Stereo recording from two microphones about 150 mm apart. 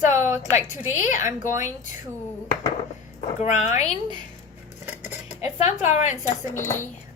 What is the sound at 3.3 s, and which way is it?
Speech, 50° left (ahead or behind).